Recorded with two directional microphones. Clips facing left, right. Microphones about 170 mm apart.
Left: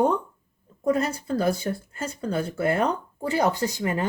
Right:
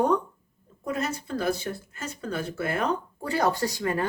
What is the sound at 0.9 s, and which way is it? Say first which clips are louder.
A woman's voice: left 6 dB; 35° left (ahead or behind).